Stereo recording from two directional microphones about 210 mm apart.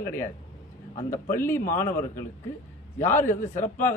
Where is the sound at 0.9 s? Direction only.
30° left (ahead or behind).